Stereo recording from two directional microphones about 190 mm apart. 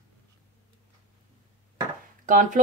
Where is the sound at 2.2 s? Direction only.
45° right (ahead or behind).